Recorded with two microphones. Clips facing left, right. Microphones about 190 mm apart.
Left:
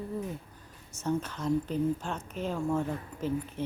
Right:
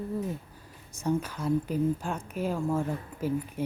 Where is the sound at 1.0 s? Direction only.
10° right (ahead or behind).